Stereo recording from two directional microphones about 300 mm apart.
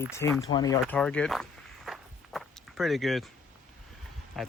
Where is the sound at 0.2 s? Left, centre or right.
Centre.